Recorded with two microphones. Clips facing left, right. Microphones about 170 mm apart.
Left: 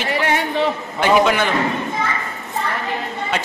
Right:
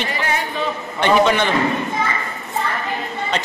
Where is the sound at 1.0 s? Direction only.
5° left (ahead or behind).